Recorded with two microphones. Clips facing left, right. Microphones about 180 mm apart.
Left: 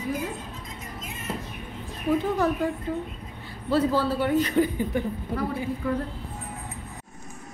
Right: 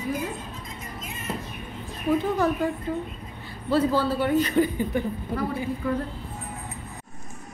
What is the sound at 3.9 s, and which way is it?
Speech, centre (ahead or behind).